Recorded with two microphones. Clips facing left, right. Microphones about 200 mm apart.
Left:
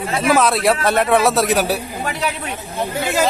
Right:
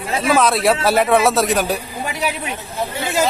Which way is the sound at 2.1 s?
15° right (ahead or behind).